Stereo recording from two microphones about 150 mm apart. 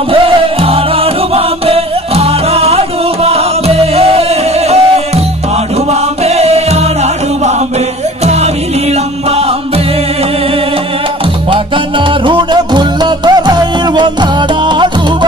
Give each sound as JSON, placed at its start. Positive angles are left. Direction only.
{"t": 0.1, "sound": "music", "side_deg": -40}
{"t": 6.2, "sound": "music", "side_deg": -45}
{"t": 12.3, "sound": "music", "side_deg": -30}